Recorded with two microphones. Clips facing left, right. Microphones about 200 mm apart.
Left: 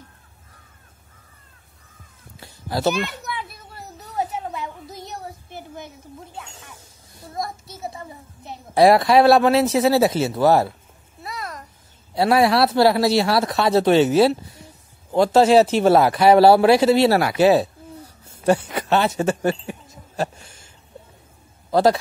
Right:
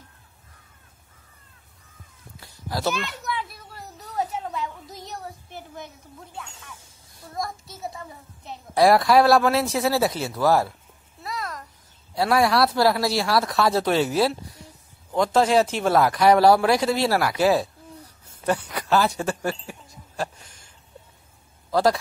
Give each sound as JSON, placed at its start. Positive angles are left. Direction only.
{"t": 2.4, "sound": "a sound", "side_deg": 25}
{"t": 4.6, "sound": "a sound", "side_deg": 5}
{"t": 8.5, "sound": "speech", "side_deg": 25}
{"t": 9.7, "sound": "speech", "side_deg": 0}
{"t": 9.9, "sound": "speech", "side_deg": 25}
{"t": 11.2, "sound": "babbling", "side_deg": 5}
{"t": 12.1, "sound": "speech", "side_deg": 25}